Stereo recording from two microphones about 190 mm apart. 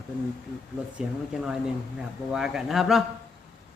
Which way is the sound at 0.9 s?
5° right (ahead or behind).